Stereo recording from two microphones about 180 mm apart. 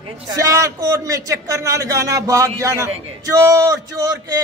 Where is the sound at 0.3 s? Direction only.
20° right (ahead or behind).